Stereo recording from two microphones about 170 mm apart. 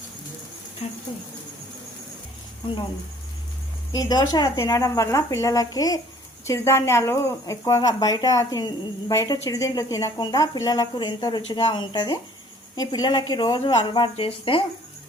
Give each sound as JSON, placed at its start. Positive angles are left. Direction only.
{"t": 0.8, "sound": "speech", "side_deg": 35}
{"t": 3.9, "sound": "a woman's voice", "side_deg": 20}